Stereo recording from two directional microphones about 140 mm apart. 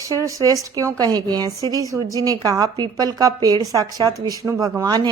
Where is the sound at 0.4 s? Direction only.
25° right (ahead or behind).